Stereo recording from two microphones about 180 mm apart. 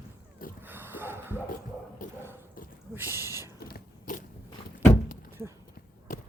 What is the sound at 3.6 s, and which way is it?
Biting, 50° left (ahead or behind).